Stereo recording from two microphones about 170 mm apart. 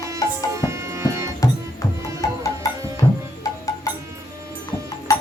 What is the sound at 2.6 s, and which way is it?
Tabla, 20° left (ahead or behind).